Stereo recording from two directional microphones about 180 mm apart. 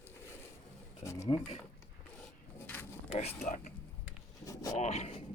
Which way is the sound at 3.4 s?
40° left (ahead or behind).